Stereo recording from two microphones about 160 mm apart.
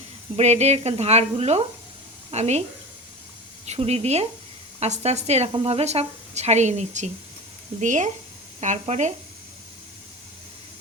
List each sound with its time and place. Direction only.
0.3 s a woman's voice: 40° right (ahead or behind)
3.7 s a woman's voice: 40° right (ahead or behind)